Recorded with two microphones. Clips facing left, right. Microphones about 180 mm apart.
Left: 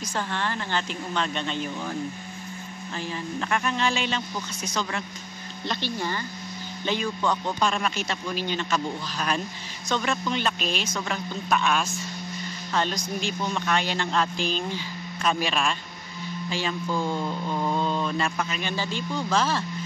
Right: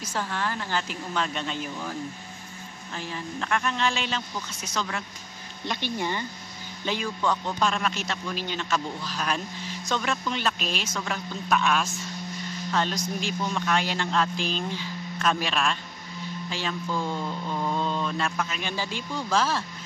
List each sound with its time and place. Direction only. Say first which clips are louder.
0.0 s mantra: left 1 dB; 5° right (ahead or behind)
3.0 s mantra: left 2 dB; centre (ahead or behind)
5.7 s speech: even; 15° right (ahead or behind)
6.9 s mantra: left 1 dB; 5° right (ahead or behind)